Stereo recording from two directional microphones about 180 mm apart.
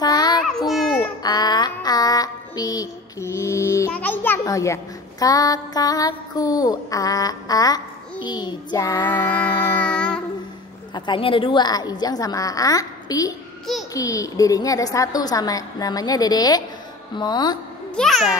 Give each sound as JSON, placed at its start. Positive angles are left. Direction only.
{"t": 0.0, "sound": "child singing", "side_deg": 20}
{"t": 0.7, "sound": "babbling", "side_deg": 0}
{"t": 1.2, "sound": "a sound", "side_deg": 20}
{"t": 5.2, "sound": "mantra", "side_deg": 20}
{"t": 9.7, "sound": "music", "side_deg": 10}
{"t": 11.0, "sound": "mantra", "side_deg": 25}
{"t": 17.9, "sound": "a child's voice", "side_deg": 0}